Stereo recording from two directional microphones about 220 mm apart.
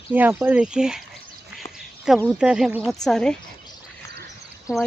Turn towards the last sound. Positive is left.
turn(degrees=15)  # may be behind; listen again after turning